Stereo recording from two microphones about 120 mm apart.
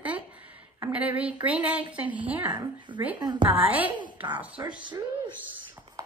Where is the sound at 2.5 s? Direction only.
40° right (ahead or behind).